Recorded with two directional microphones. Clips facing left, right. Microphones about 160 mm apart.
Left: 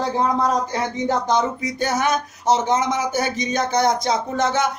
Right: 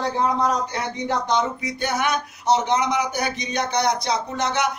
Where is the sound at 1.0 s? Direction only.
45° left (ahead or behind).